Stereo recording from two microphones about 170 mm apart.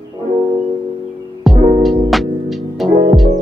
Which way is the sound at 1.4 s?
Centre (ahead or behind).